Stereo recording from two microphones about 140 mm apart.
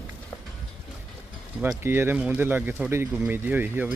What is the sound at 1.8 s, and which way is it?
Speech, 15° right (ahead or behind).